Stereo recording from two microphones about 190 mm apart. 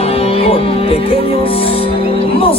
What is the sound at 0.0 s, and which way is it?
Music, 30° left (ahead or behind).